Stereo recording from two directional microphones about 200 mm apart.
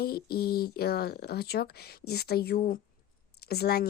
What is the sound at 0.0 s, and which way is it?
Speech, 50° left (ahead or behind).